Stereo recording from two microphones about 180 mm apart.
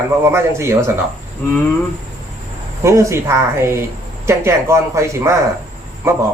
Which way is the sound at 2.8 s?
15° right (ahead or behind).